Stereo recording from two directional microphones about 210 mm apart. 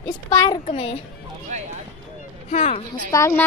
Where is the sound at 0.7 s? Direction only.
30° left (ahead or behind).